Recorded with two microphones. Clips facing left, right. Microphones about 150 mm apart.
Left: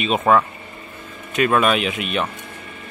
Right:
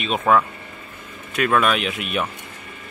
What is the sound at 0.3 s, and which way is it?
Speech, centre (ahead or behind).